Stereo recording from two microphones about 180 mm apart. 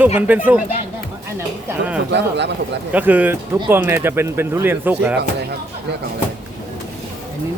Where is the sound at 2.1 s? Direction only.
75° right (ahead or behind).